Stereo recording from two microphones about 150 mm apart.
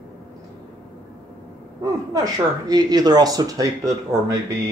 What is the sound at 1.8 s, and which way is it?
Speech, 20° right (ahead or behind).